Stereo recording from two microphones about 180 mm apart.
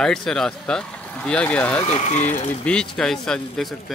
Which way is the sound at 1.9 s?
40° left (ahead or behind).